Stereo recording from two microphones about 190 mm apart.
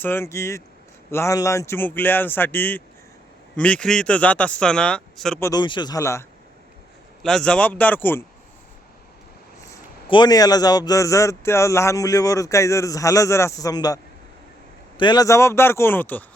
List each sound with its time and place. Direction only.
0.0 s a man's voice: 10° left (ahead or behind)
5.4 s speech: 20° left (ahead or behind)
7.2 s a man's voice: 5° left (ahead or behind)
9.6 s a man's voice: 15° left (ahead or behind)